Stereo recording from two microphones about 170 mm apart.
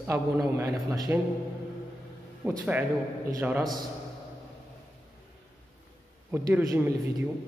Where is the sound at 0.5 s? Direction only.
15° right (ahead or behind).